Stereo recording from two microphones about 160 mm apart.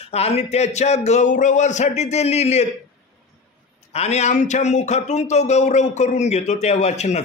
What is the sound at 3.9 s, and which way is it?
A man's voice, 40° left (ahead or behind).